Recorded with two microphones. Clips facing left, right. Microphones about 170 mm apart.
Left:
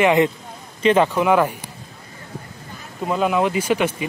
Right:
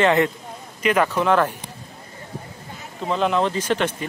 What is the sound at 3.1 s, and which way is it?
Speech, 5° left (ahead or behind).